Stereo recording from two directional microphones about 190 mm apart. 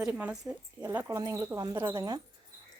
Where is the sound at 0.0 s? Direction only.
5° right (ahead or behind).